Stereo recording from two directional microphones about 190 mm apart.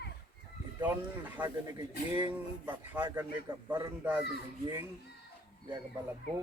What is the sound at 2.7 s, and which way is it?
Speech, 10° right (ahead or behind).